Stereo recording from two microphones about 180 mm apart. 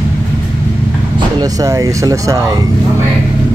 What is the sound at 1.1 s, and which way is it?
Speech, 20° right (ahead or behind).